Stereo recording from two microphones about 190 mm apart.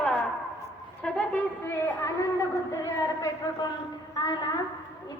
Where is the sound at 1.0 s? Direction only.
5° left (ahead or behind).